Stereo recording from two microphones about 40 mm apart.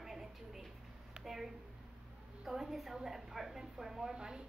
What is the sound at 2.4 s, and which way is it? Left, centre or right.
A woman's voice, centre.